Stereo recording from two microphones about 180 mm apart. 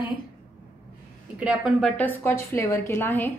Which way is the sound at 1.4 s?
5° right (ahead or behind).